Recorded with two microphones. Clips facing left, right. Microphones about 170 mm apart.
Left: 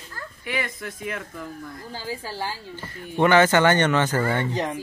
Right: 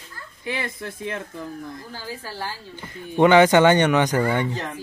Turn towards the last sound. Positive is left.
turn(degrees=15)  # may be behind; listen again after turning